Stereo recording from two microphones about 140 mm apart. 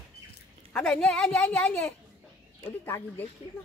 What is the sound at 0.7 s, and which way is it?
A woman's voice, 10° left (ahead or behind).